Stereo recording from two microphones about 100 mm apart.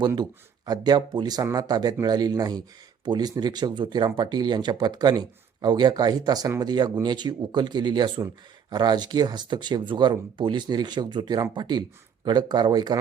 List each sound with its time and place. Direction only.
0.2 s speech: 45° right (ahead or behind)